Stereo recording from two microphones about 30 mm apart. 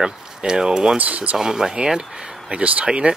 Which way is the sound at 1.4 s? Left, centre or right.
Right.